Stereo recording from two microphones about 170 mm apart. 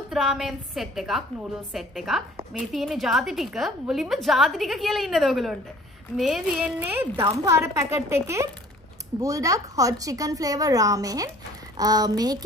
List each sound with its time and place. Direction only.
0.1 s a woman's voice: centre (ahead or behind); by 12.4 s 20° right (ahead or behind)